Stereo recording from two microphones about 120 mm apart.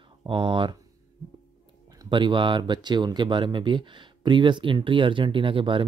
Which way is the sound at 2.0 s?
40° right (ahead or behind).